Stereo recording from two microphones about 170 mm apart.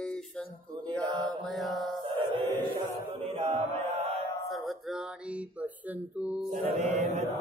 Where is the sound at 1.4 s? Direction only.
Centre (ahead or behind).